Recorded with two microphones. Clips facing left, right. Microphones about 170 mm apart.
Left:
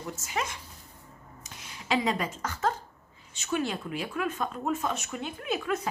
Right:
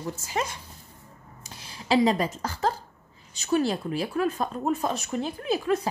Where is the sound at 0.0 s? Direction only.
35° right (ahead or behind).